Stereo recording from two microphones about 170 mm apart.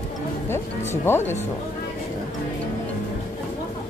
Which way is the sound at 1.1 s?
15° left (ahead or behind).